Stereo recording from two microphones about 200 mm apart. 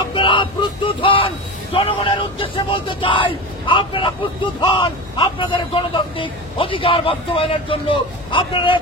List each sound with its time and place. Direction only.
0.1 s speech: 25° left (ahead or behind)